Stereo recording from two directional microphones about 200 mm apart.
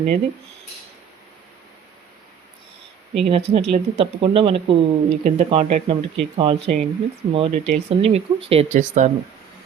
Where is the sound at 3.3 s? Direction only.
30° right (ahead or behind).